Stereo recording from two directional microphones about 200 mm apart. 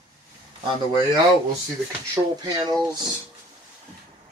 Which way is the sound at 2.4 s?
20° right (ahead or behind).